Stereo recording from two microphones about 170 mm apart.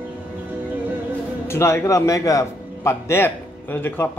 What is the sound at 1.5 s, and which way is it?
A man's voice, 15° left (ahead or behind).